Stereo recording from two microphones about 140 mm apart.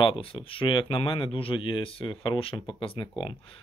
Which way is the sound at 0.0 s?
40° left (ahead or behind).